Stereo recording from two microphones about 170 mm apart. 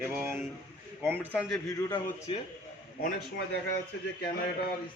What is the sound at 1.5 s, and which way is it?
Speech, 20° left (ahead or behind).